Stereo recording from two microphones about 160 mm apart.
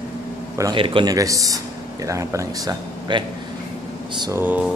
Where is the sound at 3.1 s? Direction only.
30° right (ahead or behind).